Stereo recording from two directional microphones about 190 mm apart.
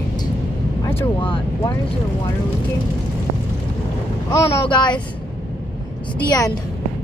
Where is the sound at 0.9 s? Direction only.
25° left (ahead or behind).